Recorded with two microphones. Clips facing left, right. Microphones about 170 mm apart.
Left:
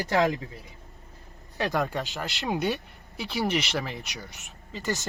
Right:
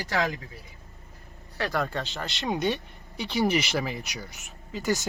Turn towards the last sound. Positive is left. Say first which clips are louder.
# right 3 dB
turn(degrees=0)  # may be behind; listen again after turning